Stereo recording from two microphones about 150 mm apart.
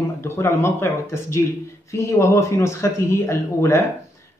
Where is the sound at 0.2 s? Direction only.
15° left (ahead or behind).